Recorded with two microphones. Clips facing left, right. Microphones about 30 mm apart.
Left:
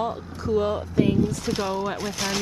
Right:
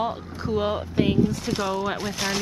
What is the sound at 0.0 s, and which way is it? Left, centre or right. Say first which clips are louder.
Speech: even; centre.